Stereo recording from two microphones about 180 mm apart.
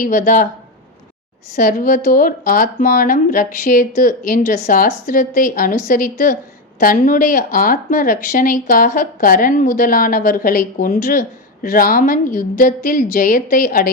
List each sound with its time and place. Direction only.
0.0 s speech: 50° left (ahead or behind)
1.5 s speech: 50° left (ahead or behind)